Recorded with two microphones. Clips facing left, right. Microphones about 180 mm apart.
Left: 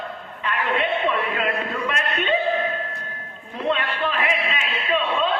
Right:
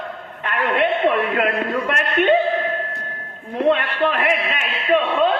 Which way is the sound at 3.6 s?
60° right (ahead or behind).